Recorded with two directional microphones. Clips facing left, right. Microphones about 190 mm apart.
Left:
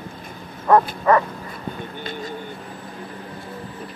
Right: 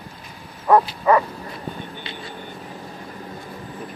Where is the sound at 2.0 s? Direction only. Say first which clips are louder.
Left 5 dB; 45° left (ahead or behind).